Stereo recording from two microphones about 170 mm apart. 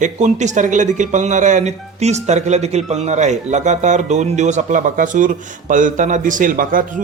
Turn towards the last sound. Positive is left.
turn(degrees=-50)  # may be behind; listen again after turning